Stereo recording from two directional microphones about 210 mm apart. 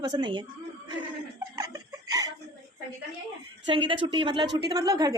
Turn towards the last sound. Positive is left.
turn(degrees=-20)  # may be behind; listen again after turning